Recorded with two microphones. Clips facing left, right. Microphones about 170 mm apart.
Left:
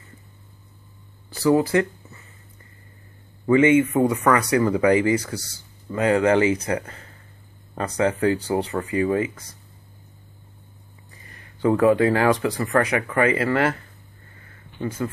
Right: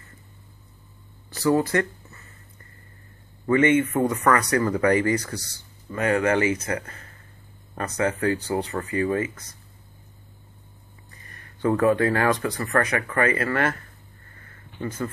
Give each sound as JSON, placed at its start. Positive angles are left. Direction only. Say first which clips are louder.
{"t": 1.6, "sound": "a sound", "louder": "left 3 dB", "side_deg": 10}
{"t": 3.4, "sound": "speech", "louder": "left 3 dB", "side_deg": 15}
{"t": 5.9, "sound": "speech", "louder": "left 3 dB", "side_deg": 20}
{"t": 11.6, "sound": "speech", "louder": "left 3 dB", "side_deg": 15}
{"t": 14.8, "sound": "speech", "louder": "left 2 dB", "side_deg": 10}